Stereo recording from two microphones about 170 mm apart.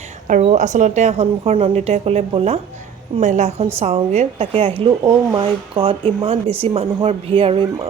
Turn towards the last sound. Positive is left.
turn(degrees=-30)  # may be behind; listen again after turning